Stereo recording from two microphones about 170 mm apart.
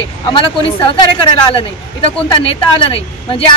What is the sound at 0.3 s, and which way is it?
Speech, 30° left (ahead or behind).